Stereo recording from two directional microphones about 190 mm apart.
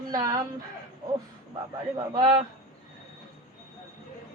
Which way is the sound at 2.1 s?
20° right (ahead or behind).